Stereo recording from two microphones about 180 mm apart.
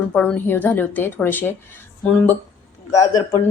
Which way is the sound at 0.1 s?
5° left (ahead or behind).